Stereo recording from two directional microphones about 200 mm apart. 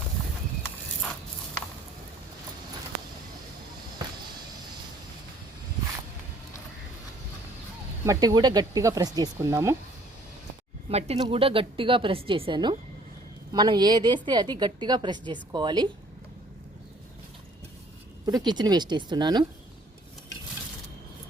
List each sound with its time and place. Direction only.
8.0 s speech: 15° right (ahead or behind)
10.8 s a woman's voice: 30° right (ahead or behind)
18.3 s a woman's voice: 20° right (ahead or behind)